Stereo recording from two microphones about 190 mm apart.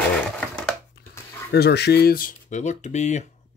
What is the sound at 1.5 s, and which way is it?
Speech, 60° left (ahead or behind).